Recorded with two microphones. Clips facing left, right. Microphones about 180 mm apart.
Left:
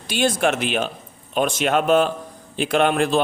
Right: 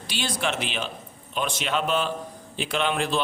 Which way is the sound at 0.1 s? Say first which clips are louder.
Left 9 dB; 50° left (ahead or behind).